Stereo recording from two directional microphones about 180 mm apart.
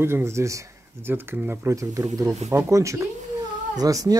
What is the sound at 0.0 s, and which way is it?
Speech, 15° right (ahead or behind).